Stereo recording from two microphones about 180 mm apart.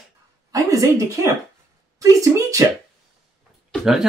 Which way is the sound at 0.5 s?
20° right (ahead or behind).